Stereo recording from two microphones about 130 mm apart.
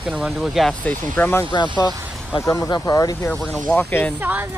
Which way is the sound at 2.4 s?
30° left (ahead or behind).